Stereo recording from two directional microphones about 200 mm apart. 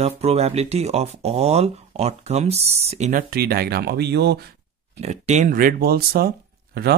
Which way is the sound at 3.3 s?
50° right (ahead or behind).